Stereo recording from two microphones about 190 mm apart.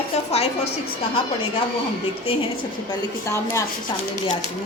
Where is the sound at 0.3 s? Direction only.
35° left (ahead or behind).